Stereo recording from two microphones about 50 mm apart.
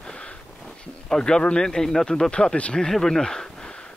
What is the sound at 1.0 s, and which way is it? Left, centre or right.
Speech, centre.